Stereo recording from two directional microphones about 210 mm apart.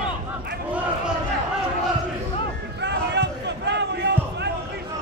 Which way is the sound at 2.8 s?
55° right (ahead or behind).